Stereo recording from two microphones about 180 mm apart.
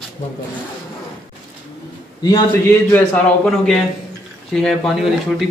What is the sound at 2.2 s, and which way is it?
A man's voice, 15° left (ahead or behind).